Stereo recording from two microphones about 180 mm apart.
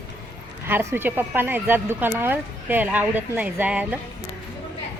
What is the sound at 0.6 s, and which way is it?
Speech, 15° right (ahead or behind).